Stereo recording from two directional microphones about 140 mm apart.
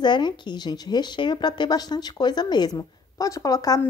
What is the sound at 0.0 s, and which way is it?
Speech, 35° left (ahead or behind).